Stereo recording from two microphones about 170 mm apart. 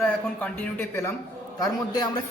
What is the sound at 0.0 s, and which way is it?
A man's voice, 10° left (ahead or behind).